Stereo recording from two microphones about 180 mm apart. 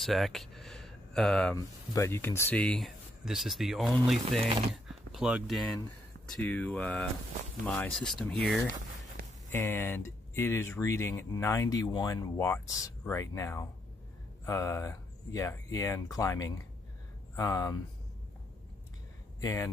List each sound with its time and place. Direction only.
0.0 s speech: centre (ahead or behind)
1.6 s speech: 15° left (ahead or behind)
9.5 s speech: 10° left (ahead or behind)
19.4 s speech: 20° left (ahead or behind)